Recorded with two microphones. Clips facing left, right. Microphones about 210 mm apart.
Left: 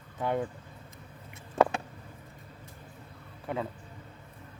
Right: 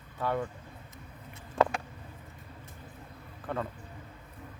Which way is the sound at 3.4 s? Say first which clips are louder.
Left 1 dB; 10° left (ahead or behind).